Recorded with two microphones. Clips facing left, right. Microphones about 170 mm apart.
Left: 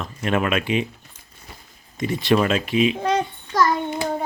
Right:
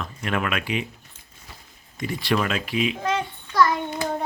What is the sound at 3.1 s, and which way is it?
Child singing, 40° left (ahead or behind).